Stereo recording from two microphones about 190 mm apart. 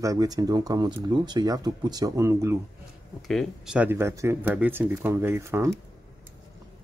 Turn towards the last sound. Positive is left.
turn(degrees=-15)  # may be behind; listen again after turning